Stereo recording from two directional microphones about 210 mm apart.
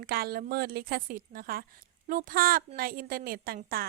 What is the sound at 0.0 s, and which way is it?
A woman's voice, 45° right (ahead or behind).